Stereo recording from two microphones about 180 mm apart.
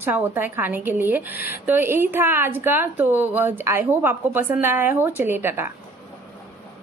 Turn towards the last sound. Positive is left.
turn(degrees=-10)  # may be behind; listen again after turning